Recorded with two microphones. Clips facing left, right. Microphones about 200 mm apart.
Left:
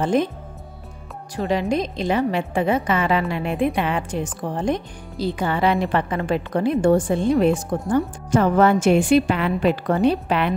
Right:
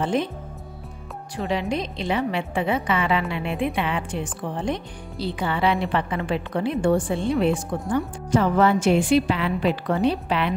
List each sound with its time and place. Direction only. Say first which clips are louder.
0.0 s a woman's voice: left 4 dB; 45° left (ahead or behind)
1.3 s a woman's voice: left 4 dB; 40° left (ahead or behind)